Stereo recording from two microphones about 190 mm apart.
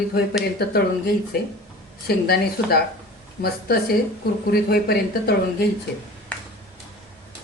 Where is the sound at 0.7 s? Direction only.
55° left (ahead or behind).